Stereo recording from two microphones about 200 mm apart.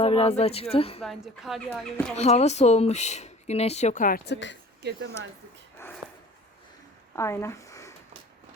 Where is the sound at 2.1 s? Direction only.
35° left (ahead or behind).